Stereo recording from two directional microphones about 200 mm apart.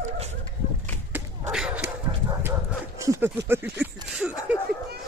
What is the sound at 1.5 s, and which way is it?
Dog, 5° right (ahead or behind).